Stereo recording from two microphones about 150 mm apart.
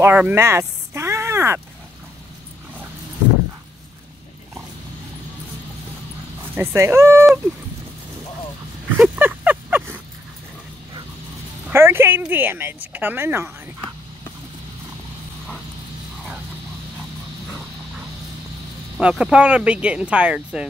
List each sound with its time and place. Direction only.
0.0 s speech: 10° right (ahead or behind)
6.5 s speech: 15° right (ahead or behind)
8.9 s a sound: 5° right (ahead or behind)
11.7 s speech: 15° right (ahead or behind)
18.9 s speech: 5° right (ahead or behind)